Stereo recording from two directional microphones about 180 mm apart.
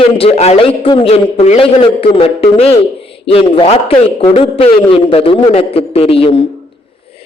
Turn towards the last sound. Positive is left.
turn(degrees=30)  # may be behind; listen again after turning